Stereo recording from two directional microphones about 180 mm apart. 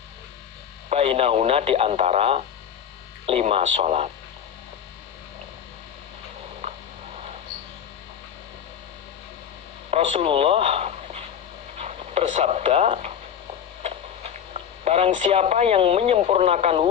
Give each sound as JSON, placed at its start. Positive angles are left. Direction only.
{"t": 0.9, "sound": "speech", "side_deg": -35}
{"t": 9.9, "sound": "speech", "side_deg": -35}
{"t": 14.3, "sound": "speech", "side_deg": -35}